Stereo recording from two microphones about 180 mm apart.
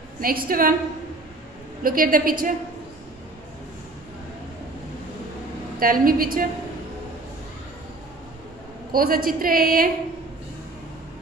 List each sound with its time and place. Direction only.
0.2 s a woman's voice: 55° right (ahead or behind)
1.8 s a woman's voice: 50° right (ahead or behind)
5.8 s a woman's voice: 50° right (ahead or behind)
8.9 s a woman's voice: 55° right (ahead or behind)